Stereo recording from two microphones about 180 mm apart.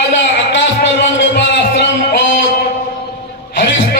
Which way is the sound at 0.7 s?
75° left (ahead or behind).